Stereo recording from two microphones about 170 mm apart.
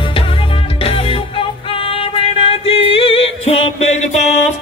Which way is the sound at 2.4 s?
35° left (ahead or behind).